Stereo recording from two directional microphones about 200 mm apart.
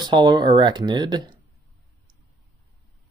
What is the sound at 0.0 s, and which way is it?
Speech, 20° right (ahead or behind).